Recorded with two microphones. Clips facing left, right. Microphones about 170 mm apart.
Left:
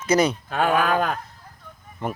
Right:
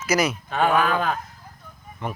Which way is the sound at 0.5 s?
45° left (ahead or behind).